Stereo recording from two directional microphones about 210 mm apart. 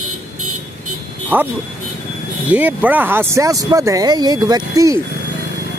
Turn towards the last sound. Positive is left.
turn(degrees=-15)  # may be behind; listen again after turning